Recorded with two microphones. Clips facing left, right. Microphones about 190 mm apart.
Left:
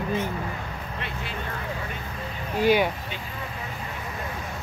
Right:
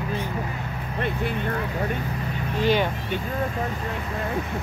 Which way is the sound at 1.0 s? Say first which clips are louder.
Right 11 dB; 50° right (ahead or behind).